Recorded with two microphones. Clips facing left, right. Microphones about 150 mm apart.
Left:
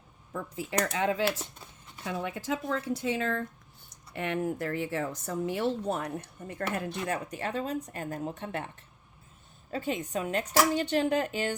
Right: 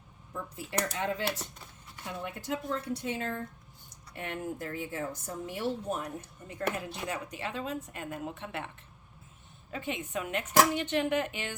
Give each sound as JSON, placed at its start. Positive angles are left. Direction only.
{"t": 0.5, "sound": "a woman's voice", "side_deg": 90}
{"t": 9.7, "sound": "a woman's voice", "side_deg": 40}